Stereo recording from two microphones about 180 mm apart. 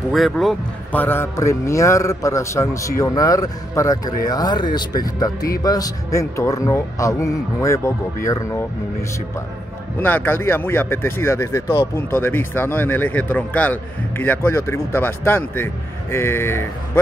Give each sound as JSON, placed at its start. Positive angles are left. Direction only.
{"t": 0.1, "sound": "speech", "side_deg": 0}
{"t": 1.0, "sound": "a man's voice", "side_deg": 10}
{"t": 9.9, "sound": "a man's voice", "side_deg": 10}